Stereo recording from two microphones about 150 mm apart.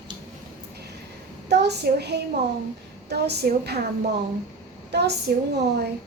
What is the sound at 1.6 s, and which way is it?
A woman's voice, 90° right.